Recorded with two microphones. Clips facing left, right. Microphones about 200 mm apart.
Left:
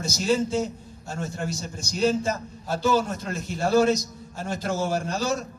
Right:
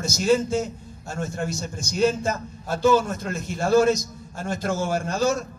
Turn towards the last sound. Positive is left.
turn(degrees=-50)  # may be behind; listen again after turning